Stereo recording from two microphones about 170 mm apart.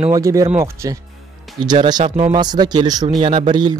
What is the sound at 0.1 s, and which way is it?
Speech, 20° right (ahead or behind).